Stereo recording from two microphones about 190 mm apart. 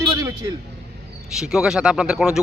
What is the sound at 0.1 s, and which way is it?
Vehicle, 15° right (ahead or behind).